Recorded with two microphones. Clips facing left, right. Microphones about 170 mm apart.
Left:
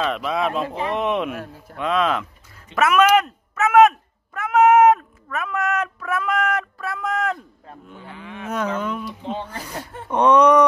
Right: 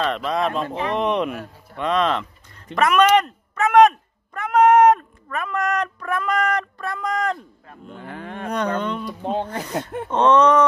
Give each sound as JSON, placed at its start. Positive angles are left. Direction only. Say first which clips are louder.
{"t": 0.0, "sound": "speech", "louder": "even", "side_deg": 5}
{"t": 8.0, "sound": "cattle", "louder": "right 4 dB", "side_deg": -50}
{"t": 8.5, "sound": "speech", "louder": "right 1 dB", "side_deg": 5}
{"t": 9.2, "sound": "cattle", "louder": "right 4 dB", "side_deg": -50}
{"t": 10.0, "sound": "speech", "louder": "left 1 dB", "side_deg": 10}